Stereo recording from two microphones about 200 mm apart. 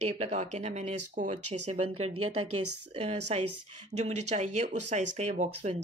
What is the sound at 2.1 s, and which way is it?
Speech, 90° right.